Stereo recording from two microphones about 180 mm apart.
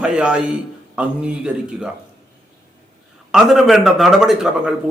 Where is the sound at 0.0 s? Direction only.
5° right (ahead or behind).